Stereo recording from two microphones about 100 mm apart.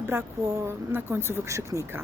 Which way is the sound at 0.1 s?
25° right (ahead or behind).